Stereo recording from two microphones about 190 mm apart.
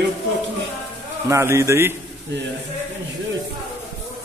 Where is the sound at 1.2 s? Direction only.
15° right (ahead or behind).